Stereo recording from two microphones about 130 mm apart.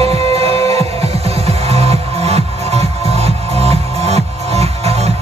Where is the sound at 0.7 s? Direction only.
50° right (ahead or behind).